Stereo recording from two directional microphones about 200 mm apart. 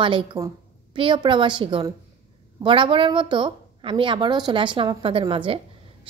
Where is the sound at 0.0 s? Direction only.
25° right (ahead or behind).